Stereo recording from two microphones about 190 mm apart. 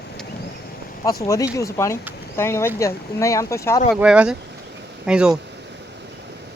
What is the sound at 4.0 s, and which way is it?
Speech, 5° right (ahead or behind).